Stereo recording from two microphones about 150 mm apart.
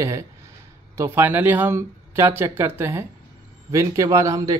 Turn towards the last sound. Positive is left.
turn(degrees=-20)  # may be behind; listen again after turning